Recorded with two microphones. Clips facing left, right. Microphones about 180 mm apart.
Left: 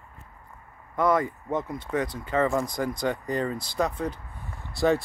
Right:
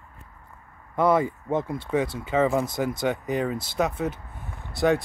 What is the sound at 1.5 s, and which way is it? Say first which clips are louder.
Speech: right 3 dB; 30° right (ahead or behind).